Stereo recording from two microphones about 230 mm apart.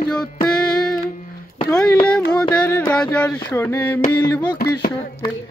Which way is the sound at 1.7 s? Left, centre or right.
Centre.